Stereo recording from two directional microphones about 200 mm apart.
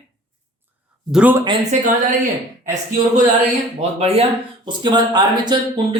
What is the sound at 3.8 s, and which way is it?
Speech, 30° right (ahead or behind).